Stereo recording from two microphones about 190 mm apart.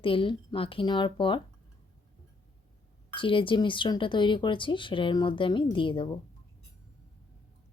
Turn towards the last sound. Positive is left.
turn(degrees=25)  # may be behind; listen again after turning